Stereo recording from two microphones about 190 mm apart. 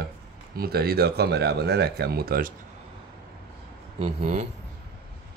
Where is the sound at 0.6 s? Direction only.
55° right (ahead or behind).